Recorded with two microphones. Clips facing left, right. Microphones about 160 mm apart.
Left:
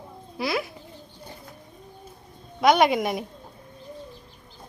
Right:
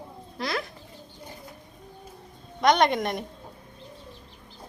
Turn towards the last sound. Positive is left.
turn(degrees=5)  # may be behind; listen again after turning